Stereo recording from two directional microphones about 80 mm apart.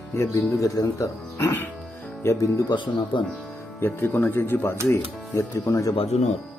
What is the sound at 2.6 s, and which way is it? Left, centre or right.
Speech, left.